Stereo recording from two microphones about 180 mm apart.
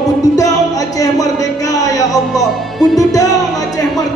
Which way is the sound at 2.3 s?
Centre (ahead or behind).